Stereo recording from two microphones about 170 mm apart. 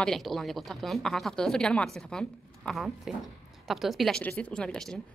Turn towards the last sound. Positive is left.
turn(degrees=5)  # may be behind; listen again after turning